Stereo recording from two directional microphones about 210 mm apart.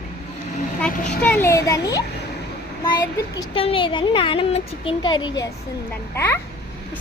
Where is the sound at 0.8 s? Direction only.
5° left (ahead or behind).